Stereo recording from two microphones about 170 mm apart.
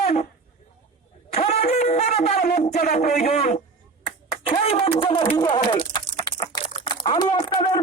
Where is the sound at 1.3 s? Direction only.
40° left (ahead or behind); by 2.9 s 55° left (ahead or behind).